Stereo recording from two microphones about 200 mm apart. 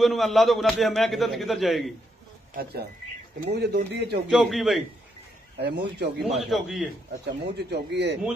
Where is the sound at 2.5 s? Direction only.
55° right (ahead or behind).